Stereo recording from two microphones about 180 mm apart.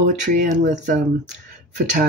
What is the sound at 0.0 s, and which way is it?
Speech, 45° right (ahead or behind).